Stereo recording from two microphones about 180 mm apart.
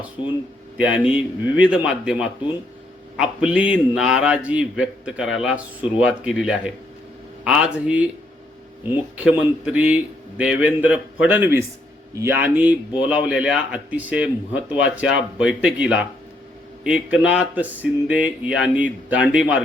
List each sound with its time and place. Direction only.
0.8 s a man's voice: 5° right (ahead or behind)